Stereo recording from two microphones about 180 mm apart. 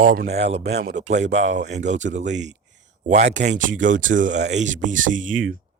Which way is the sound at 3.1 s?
40° right (ahead or behind).